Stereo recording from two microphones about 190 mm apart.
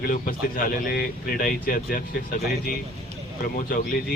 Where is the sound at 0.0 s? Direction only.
50° left (ahead or behind).